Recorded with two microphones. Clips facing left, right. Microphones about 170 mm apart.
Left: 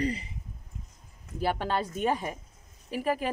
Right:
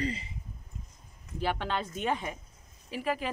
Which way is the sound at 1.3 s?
40° left (ahead or behind).